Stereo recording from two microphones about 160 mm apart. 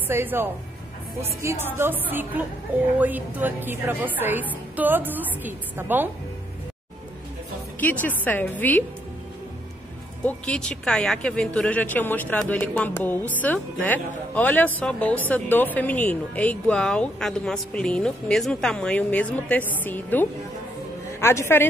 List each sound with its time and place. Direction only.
0.1 s a woman's voice: 15° right (ahead or behind)
7.8 s speech: 10° left (ahead or behind)
10.2 s speech: 5° left (ahead or behind)